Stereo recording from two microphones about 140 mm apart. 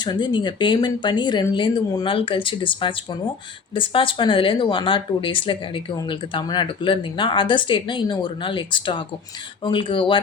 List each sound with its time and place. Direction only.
0.0 s speech: 30° left (ahead or behind)